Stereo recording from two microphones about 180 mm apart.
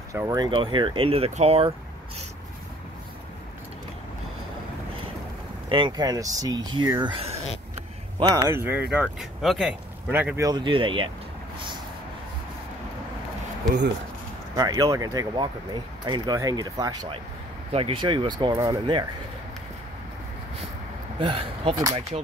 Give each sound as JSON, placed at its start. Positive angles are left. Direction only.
{"t": 0.1, "sound": "speech", "side_deg": -20}
{"t": 5.7, "sound": "speech", "side_deg": -25}
{"t": 8.4, "sound": "speech", "side_deg": -15}
{"t": 14.5, "sound": "speech", "side_deg": -20}
{"t": 21.2, "sound": "speech", "side_deg": -30}